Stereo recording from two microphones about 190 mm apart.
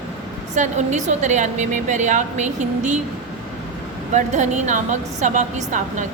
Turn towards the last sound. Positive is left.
turn(degrees=-40)  # may be behind; listen again after turning